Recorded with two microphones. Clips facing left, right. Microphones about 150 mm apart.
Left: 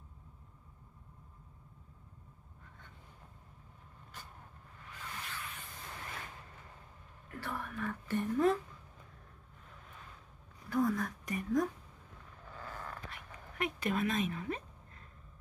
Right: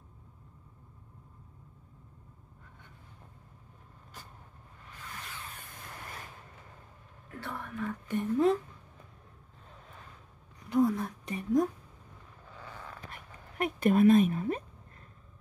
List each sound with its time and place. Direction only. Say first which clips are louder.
7.4 s whispering: even; 10° left (ahead or behind)
7.7 s speech: right 4 dB; 15° right (ahead or behind)
10.7 s whispering: right 5 dB; 20° right (ahead or behind)
13.1 s a sound: right 1 dB; 45° right (ahead or behind)
14.3 s speech: right 7 dB; 35° right (ahead or behind)